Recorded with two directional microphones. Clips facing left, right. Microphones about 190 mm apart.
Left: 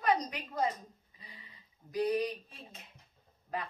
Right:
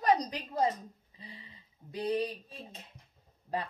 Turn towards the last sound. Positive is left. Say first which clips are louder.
# right 3 dB
turn(degrees=-30)  # may be behind; listen again after turning